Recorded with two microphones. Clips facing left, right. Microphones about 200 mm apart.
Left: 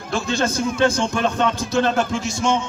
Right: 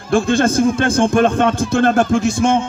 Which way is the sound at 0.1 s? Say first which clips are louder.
Right 8 dB; 55° right (ahead or behind).